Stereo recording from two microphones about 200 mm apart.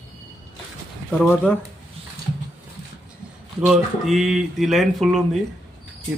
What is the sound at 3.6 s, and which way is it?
Speech, centre (ahead or behind).